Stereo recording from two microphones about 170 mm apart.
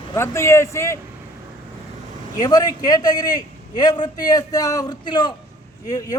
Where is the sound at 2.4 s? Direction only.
20° left (ahead or behind).